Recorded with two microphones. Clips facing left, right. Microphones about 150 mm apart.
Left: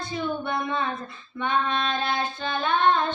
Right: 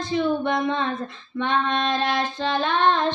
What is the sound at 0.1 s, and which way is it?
Child singing, 90° right.